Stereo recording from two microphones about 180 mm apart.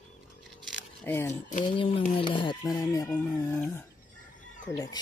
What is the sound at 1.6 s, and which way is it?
Speech, 30° left (ahead or behind).